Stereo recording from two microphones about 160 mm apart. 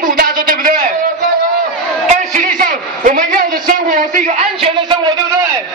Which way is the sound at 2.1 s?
50° right (ahead or behind).